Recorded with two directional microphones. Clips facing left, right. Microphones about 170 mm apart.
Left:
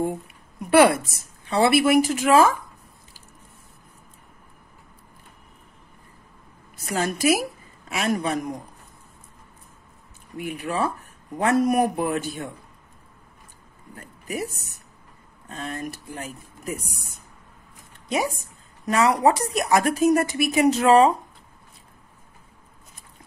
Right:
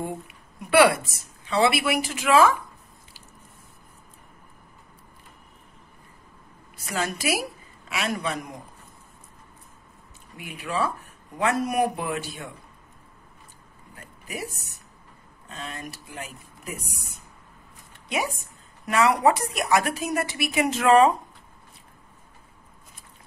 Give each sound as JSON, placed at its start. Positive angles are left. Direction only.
{"t": 0.7, "sound": "speech", "side_deg": 45}
{"t": 6.9, "sound": "speech", "side_deg": 45}
{"t": 10.3, "sound": "speech", "side_deg": 50}
{"t": 13.9, "sound": "speech", "side_deg": 45}
{"t": 18.9, "sound": "a woman's voice", "side_deg": 40}